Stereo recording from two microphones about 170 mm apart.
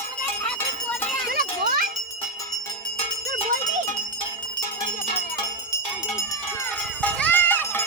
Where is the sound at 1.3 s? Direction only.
60° right (ahead or behind).